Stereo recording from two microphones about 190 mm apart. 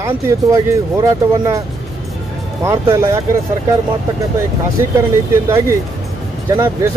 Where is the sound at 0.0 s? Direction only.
15° right (ahead or behind).